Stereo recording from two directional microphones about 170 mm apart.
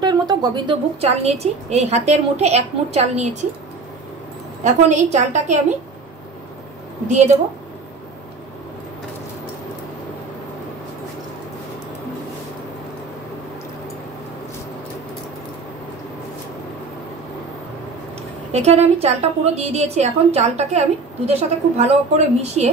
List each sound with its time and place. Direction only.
0.0 s a woman's voice: 25° right (ahead or behind)
1.2 s a woman's voice: 40° right (ahead or behind)
4.8 s a woman's voice: 45° right (ahead or behind)
7.1 s a woman's voice: 45° right (ahead or behind)
18.5 s a woman's voice: 40° right (ahead or behind)